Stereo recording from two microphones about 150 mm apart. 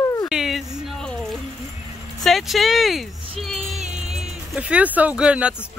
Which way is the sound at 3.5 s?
45° right (ahead or behind).